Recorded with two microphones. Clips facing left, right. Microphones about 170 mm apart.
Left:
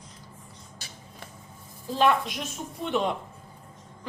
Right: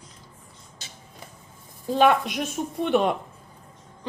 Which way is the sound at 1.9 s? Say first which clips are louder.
Right 4 dB; 60° right (ahead or behind).